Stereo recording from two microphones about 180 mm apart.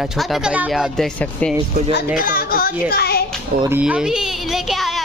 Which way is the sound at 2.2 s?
55° left (ahead or behind).